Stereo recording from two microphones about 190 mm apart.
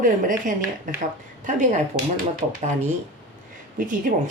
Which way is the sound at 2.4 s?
35° right (ahead or behind).